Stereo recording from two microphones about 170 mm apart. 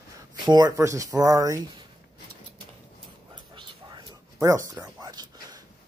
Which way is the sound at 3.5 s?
20° right (ahead or behind).